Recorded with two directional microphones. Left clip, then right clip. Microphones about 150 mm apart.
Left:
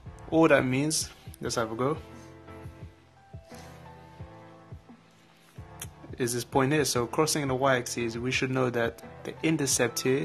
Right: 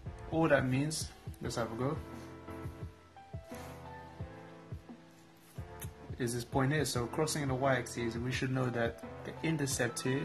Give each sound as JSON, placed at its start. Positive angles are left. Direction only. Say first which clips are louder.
{"t": 0.3, "sound": "speech", "louder": "left 8 dB", "side_deg": 40}
{"t": 6.1, "sound": "speech", "louder": "left 8 dB", "side_deg": 35}